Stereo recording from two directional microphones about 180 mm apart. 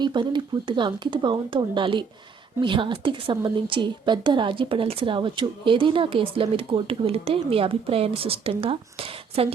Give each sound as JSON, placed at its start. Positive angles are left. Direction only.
{"t": 0.0, "sound": "a woman's voice", "side_deg": -25}